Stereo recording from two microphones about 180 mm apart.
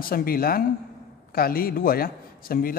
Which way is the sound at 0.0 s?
55° left (ahead or behind).